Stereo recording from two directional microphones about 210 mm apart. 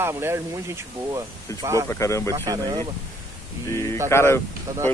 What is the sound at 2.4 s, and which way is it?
Speech, 20° right (ahead or behind).